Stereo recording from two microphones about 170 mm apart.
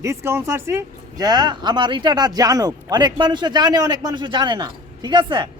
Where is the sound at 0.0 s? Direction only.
15° right (ahead or behind).